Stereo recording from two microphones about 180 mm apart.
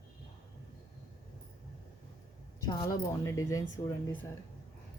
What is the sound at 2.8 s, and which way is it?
Speech, 15° left (ahead or behind).